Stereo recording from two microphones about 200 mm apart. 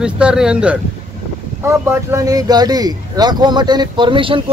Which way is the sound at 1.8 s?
15° right (ahead or behind).